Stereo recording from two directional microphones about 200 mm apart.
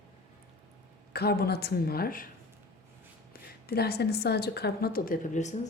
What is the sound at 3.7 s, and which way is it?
Speech, 50° left (ahead or behind).